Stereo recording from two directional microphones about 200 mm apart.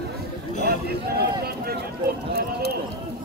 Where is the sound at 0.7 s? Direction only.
50° right (ahead or behind).